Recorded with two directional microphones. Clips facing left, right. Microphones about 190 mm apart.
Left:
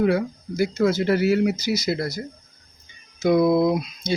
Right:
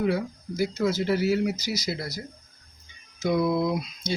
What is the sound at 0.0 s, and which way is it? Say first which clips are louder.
Speech: left 5 dB; 60° left (ahead or behind).